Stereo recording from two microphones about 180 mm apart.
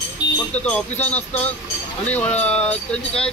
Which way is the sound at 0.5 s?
10° left (ahead or behind).